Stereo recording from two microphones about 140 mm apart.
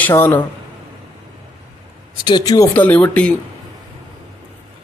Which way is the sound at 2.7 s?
10° left (ahead or behind).